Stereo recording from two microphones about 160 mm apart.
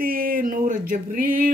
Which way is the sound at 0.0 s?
60° right (ahead or behind).